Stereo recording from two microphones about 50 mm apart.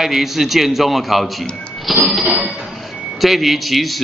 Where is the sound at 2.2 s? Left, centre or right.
Right.